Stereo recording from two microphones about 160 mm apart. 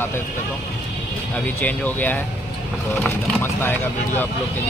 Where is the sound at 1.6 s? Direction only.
10° left (ahead or behind).